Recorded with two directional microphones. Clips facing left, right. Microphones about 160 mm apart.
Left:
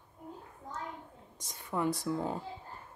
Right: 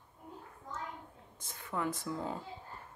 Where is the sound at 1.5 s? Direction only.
15° left (ahead or behind).